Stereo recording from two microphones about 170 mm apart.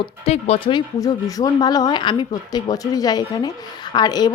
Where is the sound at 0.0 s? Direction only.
35° left (ahead or behind).